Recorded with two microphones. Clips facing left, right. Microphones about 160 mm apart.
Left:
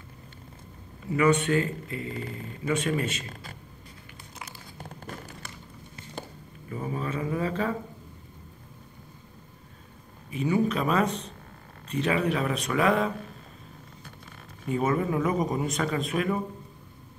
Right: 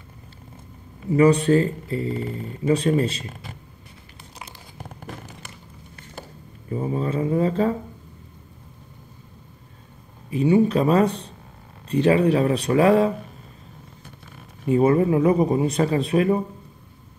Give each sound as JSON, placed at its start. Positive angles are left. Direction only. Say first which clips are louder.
{"t": 1.1, "sound": "speech", "louder": "right 7 dB", "side_deg": -35}
{"t": 4.4, "sound": "a sound", "louder": "right 2 dB", "side_deg": -20}
{"t": 6.7, "sound": "speech", "louder": "right 7 dB", "side_deg": -30}
{"t": 10.3, "sound": "speech", "louder": "right 7 dB", "side_deg": -35}
{"t": 14.7, "sound": "speech", "louder": "right 8 dB", "side_deg": -30}